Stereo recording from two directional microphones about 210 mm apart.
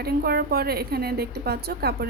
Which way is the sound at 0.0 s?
45° right (ahead or behind).